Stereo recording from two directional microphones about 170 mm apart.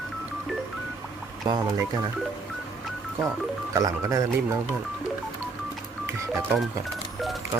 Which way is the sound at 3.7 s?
20° right (ahead or behind).